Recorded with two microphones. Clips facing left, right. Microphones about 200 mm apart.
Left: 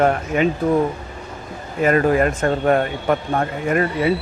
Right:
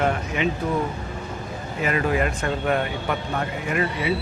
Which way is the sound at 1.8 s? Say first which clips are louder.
Left 7 dB; 45° left (ahead or behind).